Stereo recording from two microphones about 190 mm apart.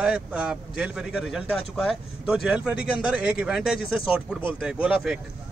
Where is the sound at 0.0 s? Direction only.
5° right (ahead or behind).